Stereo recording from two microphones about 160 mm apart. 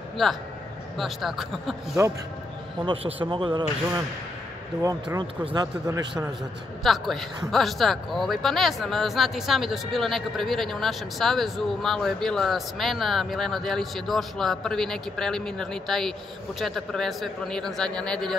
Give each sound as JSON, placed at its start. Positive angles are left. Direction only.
{"t": 0.2, "sound": "speech", "side_deg": 0}
{"t": 2.8, "sound": "a man's voice", "side_deg": -35}
{"t": 6.8, "sound": "speech", "side_deg": 0}